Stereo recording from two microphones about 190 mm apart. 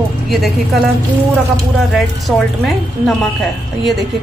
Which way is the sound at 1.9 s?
Centre (ahead or behind).